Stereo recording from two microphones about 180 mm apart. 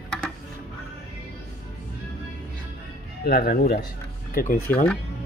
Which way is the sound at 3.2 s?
60° left (ahead or behind).